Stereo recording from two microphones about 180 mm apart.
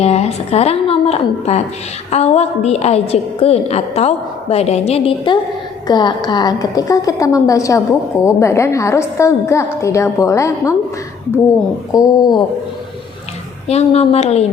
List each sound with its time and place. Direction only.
0.0 s a woman's voice: 35° left (ahead or behind); by 10.8 s 15° left (ahead or behind)
11.9 s a woman's voice: 20° left (ahead or behind)
13.7 s a woman's voice: 35° left (ahead or behind)